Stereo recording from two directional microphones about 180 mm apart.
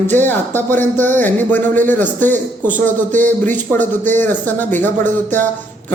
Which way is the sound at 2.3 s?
45° right (ahead or behind).